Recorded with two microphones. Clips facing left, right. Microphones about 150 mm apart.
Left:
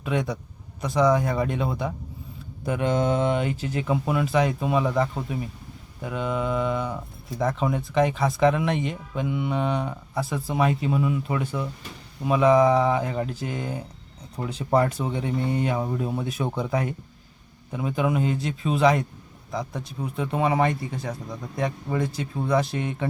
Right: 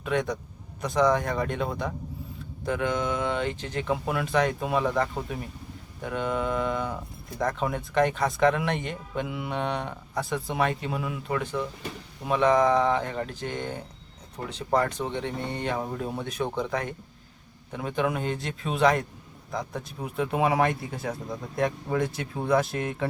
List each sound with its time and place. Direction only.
0.0 s speech: 5° left (ahead or behind)
2.6 s speech: 20° left (ahead or behind)
2.9 s mantra: 35° left (ahead or behind)
3.2 s speech: 10° left (ahead or behind)